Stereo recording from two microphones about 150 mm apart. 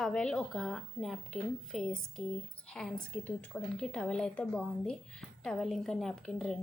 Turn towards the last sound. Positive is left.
turn(degrees=5)  # may be behind; listen again after turning